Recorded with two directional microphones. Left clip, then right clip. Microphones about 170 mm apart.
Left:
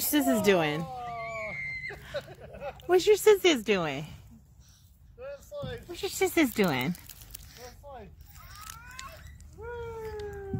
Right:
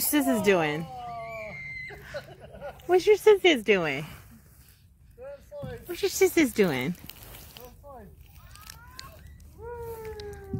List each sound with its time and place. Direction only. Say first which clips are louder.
0.0 s a woman's voice: right 1 dB; centre (ahead or behind)
1.0 s screaming: left 1 dB; 20° right (ahead or behind)
2.1 s a sound: left 2 dB; 25° right (ahead or behind)
2.9 s speech: right 2 dB; 20° left (ahead or behind)
3.5 s a woman's voice: right 4 dB; 5° left (ahead or behind)
5.2 s a sound: left 1 dB; 20° right (ahead or behind)
5.9 s a woman's voice: right 6 dB; 5° right (ahead or behind)
6.3 s a woman's voice: right 2 dB; 15° left (ahead or behind)
7.6 s a sound: left 1 dB; 20° right (ahead or behind)